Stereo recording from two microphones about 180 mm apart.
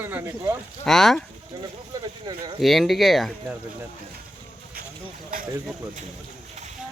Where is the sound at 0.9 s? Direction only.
Centre (ahead or behind).